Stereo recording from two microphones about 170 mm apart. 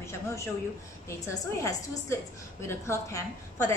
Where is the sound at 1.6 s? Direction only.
15° left (ahead or behind).